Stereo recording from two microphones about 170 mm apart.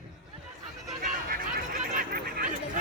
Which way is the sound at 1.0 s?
55° right (ahead or behind).